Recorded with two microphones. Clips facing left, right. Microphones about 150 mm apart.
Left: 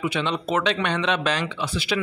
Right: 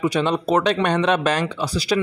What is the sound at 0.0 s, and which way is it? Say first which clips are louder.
Speech: right 5 dB; 40° right (ahead or behind).